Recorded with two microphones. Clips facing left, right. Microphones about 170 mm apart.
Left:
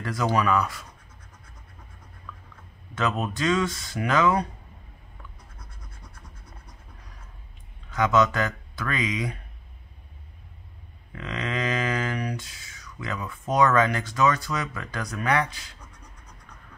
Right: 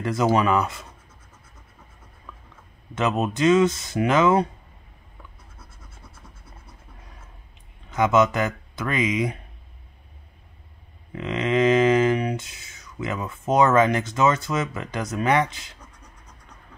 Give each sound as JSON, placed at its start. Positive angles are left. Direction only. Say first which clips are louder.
{"t": 0.0, "sound": "speech", "louder": "right 4 dB", "side_deg": -20}
{"t": 2.9, "sound": "speech", "louder": "right 4 dB", "side_deg": -20}
{"t": 5.6, "sound": "scratch", "louder": "right 2 dB", "side_deg": -5}
{"t": 7.9, "sound": "speech", "louder": "right 3 dB", "side_deg": -20}
{"t": 11.1, "sound": "speech", "louder": "right 8 dB", "side_deg": -20}